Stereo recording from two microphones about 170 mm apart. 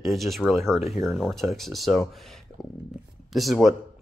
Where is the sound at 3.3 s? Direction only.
Centre (ahead or behind).